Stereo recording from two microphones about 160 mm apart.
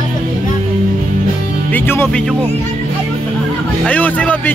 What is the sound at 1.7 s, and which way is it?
Speech, 15° left (ahead or behind).